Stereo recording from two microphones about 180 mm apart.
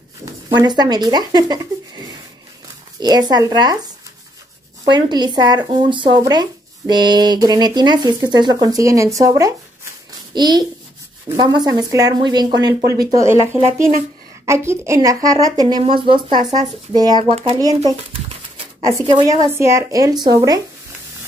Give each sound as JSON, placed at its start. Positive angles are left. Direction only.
{"t": 0.2, "sound": "speech", "side_deg": -25}
{"t": 3.0, "sound": "speech", "side_deg": -20}
{"t": 4.9, "sound": "speech", "side_deg": -25}
{"t": 17.6, "sound": "speech", "side_deg": -20}